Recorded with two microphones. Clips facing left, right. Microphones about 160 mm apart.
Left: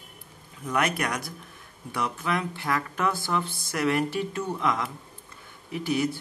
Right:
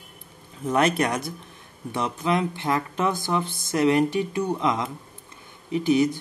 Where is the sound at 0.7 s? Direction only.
25° right (ahead or behind).